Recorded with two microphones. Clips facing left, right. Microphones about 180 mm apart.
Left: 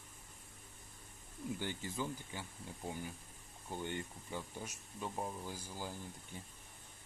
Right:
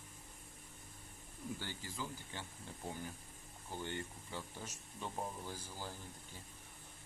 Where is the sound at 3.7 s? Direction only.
15° left (ahead or behind).